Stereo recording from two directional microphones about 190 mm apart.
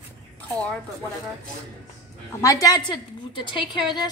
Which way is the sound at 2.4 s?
20° left (ahead or behind).